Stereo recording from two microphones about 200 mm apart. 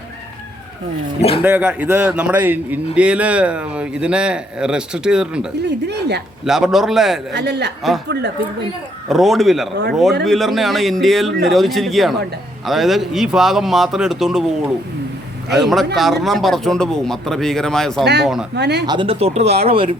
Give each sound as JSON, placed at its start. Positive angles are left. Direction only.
{"t": 1.2, "sound": "speech", "side_deg": 30}
{"t": 1.5, "sound": "a man's voice", "side_deg": -10}
{"t": 5.6, "sound": "speech", "side_deg": -55}
{"t": 6.4, "sound": "a man's voice", "side_deg": 0}
{"t": 7.3, "sound": "speech", "side_deg": -55}
{"t": 9.0, "sound": "a man's voice", "side_deg": 0}
{"t": 15.5, "sound": "a man's voice", "side_deg": 0}
{"t": 18.0, "sound": "speech", "side_deg": -55}
{"t": 18.9, "sound": "speech", "side_deg": -25}